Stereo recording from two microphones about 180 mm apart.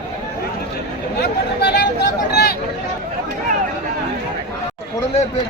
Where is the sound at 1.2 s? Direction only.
65° left (ahead or behind).